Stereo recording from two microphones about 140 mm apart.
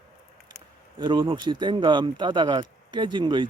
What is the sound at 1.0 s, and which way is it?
Speech, 35° right (ahead or behind).